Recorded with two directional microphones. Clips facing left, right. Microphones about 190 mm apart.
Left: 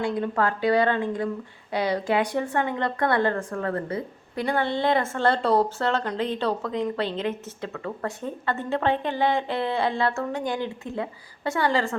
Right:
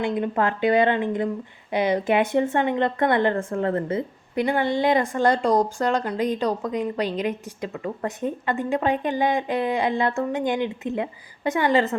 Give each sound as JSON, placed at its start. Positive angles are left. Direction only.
{"t": 0.0, "sound": "speech", "side_deg": -20}